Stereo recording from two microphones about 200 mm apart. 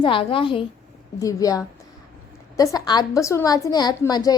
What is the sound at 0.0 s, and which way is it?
A woman's voice, 25° left (ahead or behind).